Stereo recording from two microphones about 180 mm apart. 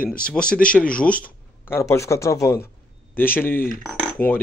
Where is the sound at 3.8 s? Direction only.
5° left (ahead or behind).